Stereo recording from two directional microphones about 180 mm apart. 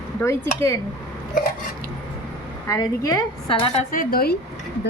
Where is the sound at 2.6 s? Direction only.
20° left (ahead or behind).